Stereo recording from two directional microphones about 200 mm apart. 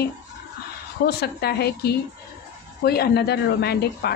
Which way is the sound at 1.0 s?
55° left (ahead or behind).